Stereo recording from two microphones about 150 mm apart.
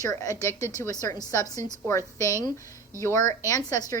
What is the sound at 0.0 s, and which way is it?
Speech, 20° left (ahead or behind).